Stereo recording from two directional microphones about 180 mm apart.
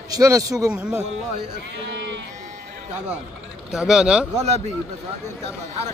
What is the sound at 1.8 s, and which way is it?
Sheep, 90° right.